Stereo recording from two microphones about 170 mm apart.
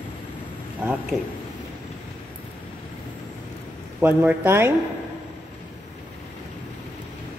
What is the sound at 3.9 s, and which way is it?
Speech, 10° right (ahead or behind).